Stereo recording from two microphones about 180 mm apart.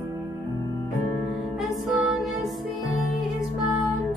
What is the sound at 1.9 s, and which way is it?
Music, centre (ahead or behind).